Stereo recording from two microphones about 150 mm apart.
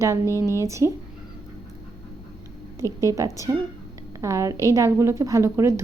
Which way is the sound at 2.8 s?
20° right (ahead or behind).